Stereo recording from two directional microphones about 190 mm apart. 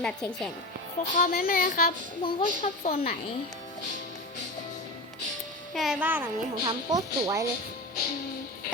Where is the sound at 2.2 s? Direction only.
35° left (ahead or behind).